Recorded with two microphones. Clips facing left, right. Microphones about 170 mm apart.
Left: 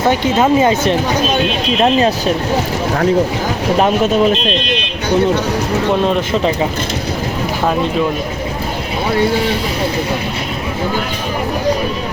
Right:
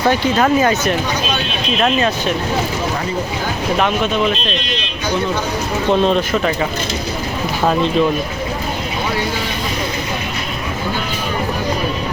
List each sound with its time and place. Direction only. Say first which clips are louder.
0.0 s speech: left 2 dB; 20° left (ahead or behind)
3.8 s speech: left 5 dB; 40° left (ahead or behind)
5.9 s speech: right 2 dB; 10° left (ahead or behind)
7.6 s speech: right 1 dB; 10° left (ahead or behind)